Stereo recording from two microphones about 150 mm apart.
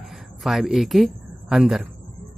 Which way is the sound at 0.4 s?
Centre (ahead or behind).